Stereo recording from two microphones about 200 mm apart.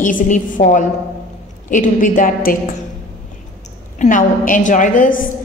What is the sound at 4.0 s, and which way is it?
A woman's voice, 40° left (ahead or behind).